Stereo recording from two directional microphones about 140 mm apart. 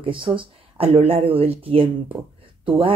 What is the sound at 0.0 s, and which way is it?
A woman's voice, 40° right (ahead or behind).